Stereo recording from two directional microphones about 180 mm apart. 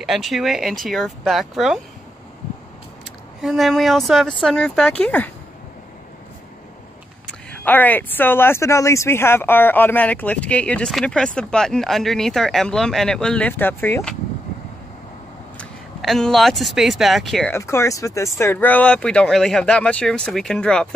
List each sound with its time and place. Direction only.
0.0 s speech: centre (ahead or behind)
3.3 s speech: centre (ahead or behind)
7.2 s speech: 10° left (ahead or behind)
15.5 s speech: centre (ahead or behind)
17.5 s speech: 15° left (ahead or behind)